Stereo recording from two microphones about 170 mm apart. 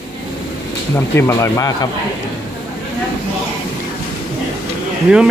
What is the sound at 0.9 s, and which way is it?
Speech, 15° left (ahead or behind).